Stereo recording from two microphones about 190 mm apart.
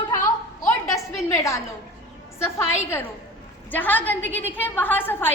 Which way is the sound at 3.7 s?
10° left (ahead or behind).